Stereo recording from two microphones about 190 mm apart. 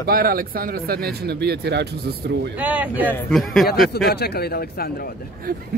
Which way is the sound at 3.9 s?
60° left (ahead or behind).